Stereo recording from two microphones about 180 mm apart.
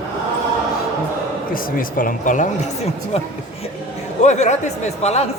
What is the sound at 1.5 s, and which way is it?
Speech, 50° left (ahead or behind).